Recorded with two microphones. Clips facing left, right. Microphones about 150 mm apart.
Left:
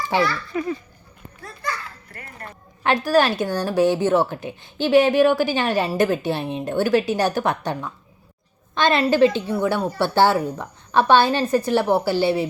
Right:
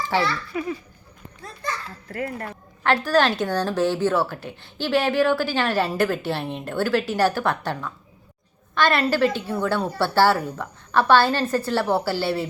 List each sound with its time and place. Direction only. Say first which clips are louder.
0.0 s a child's voice: left 2 dB; 15° left (ahead or behind)
0.5 s speech: left 4 dB; 10° right (ahead or behind)
1.4 s children playing: left 1 dB; 20° right (ahead or behind)
2.1 s speech: right 12 dB; 90° right
2.8 s a woman's voice: left 1 dB; 15° left (ahead or behind)